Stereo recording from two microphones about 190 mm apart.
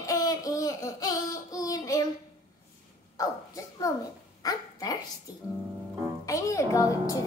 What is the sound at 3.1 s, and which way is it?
Speech, 15° left (ahead or behind).